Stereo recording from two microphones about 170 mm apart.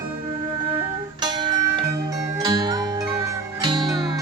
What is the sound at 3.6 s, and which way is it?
Music, 25° right (ahead or behind).